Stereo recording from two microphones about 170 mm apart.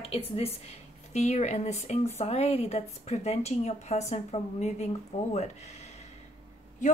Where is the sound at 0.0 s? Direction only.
35° left (ahead or behind).